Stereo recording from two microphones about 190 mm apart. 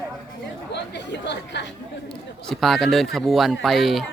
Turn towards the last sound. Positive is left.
turn(degrees=0)  # may be behind; listen again after turning